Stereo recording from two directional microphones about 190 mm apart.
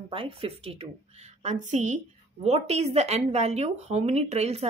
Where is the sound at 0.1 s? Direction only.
30° right (ahead or behind).